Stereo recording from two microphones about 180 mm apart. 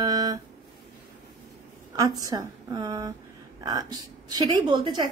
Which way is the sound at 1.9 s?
20° right (ahead or behind).